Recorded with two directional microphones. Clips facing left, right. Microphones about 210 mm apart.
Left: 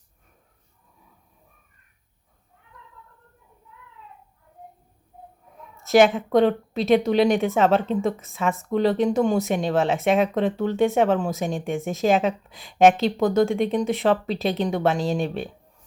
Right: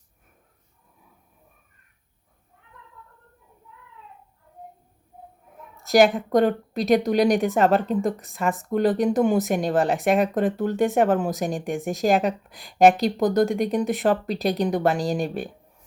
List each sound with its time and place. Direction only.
5.8 s a woman's voice: centre (ahead or behind)